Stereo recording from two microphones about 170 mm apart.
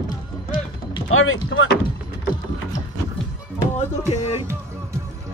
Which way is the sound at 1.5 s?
90° left.